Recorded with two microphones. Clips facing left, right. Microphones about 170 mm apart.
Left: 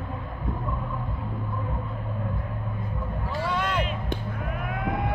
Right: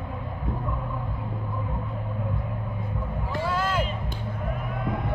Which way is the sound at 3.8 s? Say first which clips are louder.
Left 1 dB; 70° left (ahead or behind).